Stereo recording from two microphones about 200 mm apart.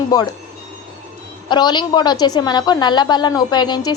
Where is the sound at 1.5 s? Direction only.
20° left (ahead or behind).